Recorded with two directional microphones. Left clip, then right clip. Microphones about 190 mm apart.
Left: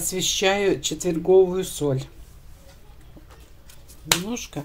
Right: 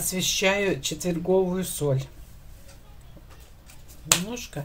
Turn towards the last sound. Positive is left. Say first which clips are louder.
# left 2 dB
turn(degrees=25)  # may be behind; listen again after turning